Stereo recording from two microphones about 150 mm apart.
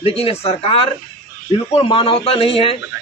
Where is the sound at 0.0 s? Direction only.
40° left (ahead or behind).